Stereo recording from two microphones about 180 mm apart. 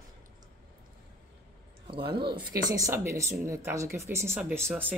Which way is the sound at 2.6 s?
20° right (ahead or behind).